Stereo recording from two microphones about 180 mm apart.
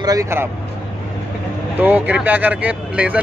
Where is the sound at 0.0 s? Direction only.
20° right (ahead or behind).